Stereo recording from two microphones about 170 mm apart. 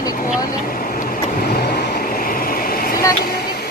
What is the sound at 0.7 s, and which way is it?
Vehicle, 60° left (ahead or behind).